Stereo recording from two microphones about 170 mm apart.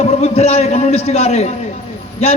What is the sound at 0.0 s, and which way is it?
A man's voice, 40° left (ahead or behind).